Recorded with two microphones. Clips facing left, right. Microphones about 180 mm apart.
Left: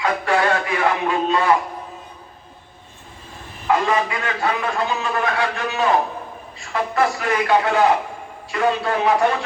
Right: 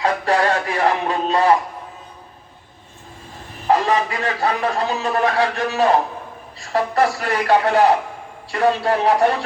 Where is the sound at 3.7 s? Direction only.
35° right (ahead or behind).